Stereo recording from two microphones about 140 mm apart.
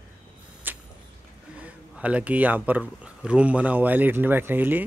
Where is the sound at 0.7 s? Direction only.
15° right (ahead or behind).